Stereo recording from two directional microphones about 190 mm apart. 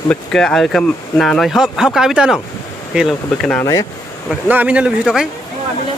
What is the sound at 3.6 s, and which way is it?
Speech, 15° left (ahead or behind).